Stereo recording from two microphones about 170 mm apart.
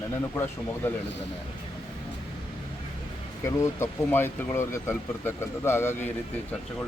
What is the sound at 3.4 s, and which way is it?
Speech, 15° left (ahead or behind).